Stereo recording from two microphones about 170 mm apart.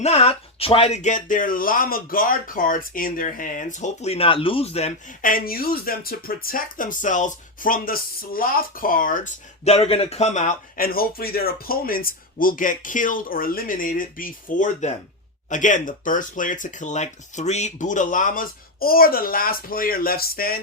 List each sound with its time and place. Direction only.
0.0 s speech: 40° left (ahead or behind)
5.2 s speech: 55° left (ahead or behind)